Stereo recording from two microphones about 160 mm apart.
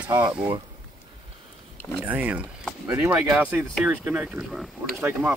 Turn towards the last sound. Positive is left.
turn(degrees=-10)  # may be behind; listen again after turning